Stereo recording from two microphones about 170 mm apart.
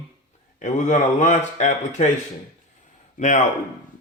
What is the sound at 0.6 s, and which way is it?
A man's voice, 45° left (ahead or behind).